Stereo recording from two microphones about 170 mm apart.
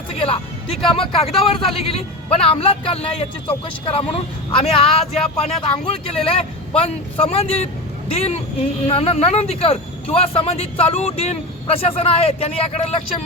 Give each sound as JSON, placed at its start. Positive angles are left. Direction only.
{"t": 0.1, "sound": "speech", "side_deg": 35}